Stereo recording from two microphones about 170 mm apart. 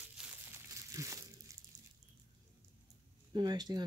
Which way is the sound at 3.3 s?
25° right (ahead or behind).